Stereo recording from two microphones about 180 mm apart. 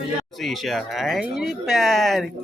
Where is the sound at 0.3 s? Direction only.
Centre (ahead or behind).